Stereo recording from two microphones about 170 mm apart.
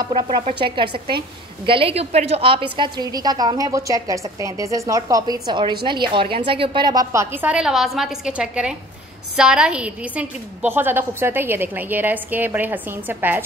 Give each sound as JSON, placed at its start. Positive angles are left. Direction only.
{"t": 0.0, "sound": "a woman's voice", "side_deg": -25}